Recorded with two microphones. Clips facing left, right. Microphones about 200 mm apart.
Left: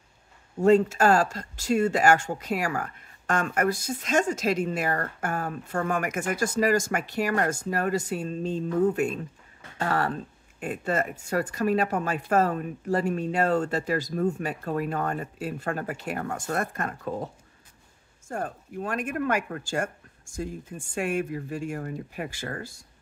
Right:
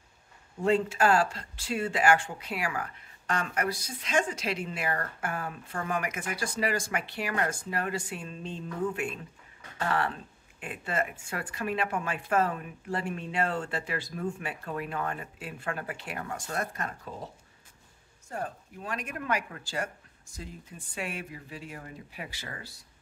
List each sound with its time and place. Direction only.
0.6 s speech: 45° left (ahead or behind)
18.3 s speech: 50° left (ahead or behind)